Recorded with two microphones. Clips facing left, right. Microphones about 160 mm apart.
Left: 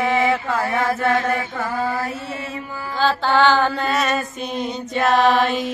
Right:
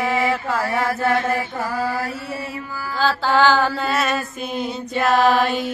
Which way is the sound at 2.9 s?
Centre (ahead or behind).